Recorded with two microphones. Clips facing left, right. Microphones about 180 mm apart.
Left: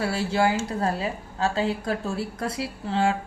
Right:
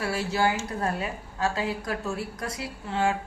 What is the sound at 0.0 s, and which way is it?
Speech, 25° left (ahead or behind).